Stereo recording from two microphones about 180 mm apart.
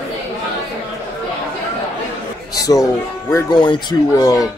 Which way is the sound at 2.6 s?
20° left (ahead or behind).